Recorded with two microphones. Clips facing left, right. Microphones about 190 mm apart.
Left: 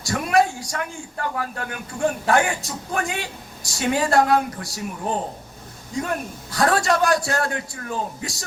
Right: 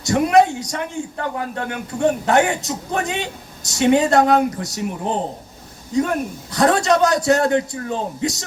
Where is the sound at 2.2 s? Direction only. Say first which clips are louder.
Right 3 dB; 20° right (ahead or behind).